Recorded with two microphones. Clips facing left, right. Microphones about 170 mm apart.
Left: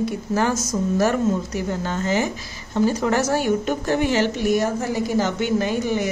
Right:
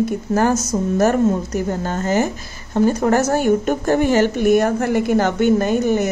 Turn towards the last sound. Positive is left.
turn(degrees=-45)  # may be behind; listen again after turning